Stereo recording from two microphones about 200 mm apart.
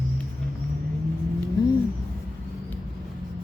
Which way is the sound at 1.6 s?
20° left (ahead or behind).